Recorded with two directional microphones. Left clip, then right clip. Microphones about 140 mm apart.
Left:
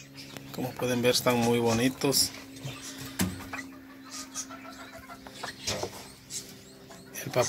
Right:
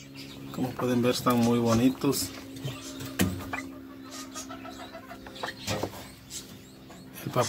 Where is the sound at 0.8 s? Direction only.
10° left (ahead or behind).